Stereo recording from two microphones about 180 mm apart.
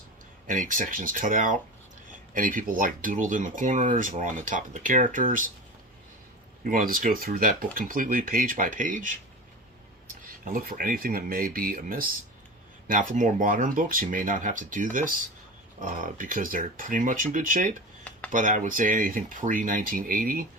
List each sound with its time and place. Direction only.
0.4 s speech: 45° right (ahead or behind)
6.7 s speech: 50° right (ahead or behind)
10.4 s speech: 50° right (ahead or behind)